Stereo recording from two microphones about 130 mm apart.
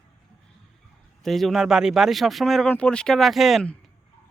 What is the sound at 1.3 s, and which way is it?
A woman's voice, centre (ahead or behind).